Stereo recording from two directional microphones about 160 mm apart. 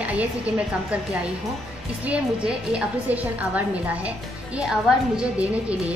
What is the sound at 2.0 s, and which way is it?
Speech, 5° right (ahead or behind).